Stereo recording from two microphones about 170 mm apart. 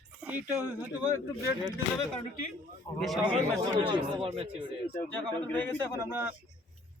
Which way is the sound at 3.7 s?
30° right (ahead or behind).